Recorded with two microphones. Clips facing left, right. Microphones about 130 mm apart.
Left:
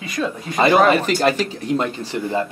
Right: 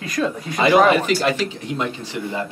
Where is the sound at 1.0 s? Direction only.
45° left (ahead or behind).